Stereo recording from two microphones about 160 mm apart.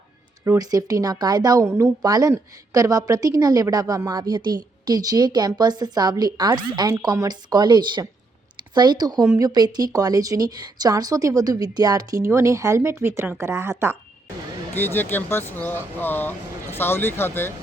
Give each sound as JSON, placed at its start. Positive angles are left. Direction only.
{"t": 0.4, "sound": "a woman's voice", "side_deg": -20}
{"t": 14.8, "sound": "speech", "side_deg": 10}